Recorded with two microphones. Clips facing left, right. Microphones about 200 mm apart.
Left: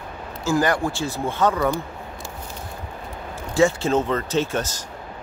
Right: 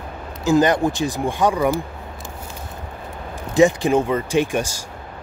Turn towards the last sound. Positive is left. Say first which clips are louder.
# right 3 dB
turn(degrees=-10)  # may be behind; listen again after turning